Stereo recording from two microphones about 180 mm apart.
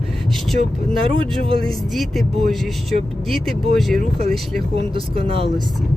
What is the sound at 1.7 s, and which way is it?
Speech, centre (ahead or behind).